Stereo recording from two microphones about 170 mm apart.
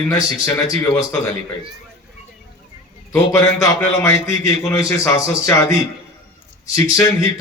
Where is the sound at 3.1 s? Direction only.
15° left (ahead or behind).